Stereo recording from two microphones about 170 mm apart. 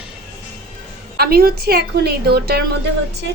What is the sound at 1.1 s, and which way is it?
A woman's voice, 60° right (ahead or behind).